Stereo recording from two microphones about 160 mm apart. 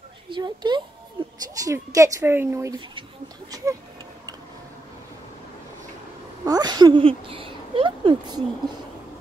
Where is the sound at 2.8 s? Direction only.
30° right (ahead or behind).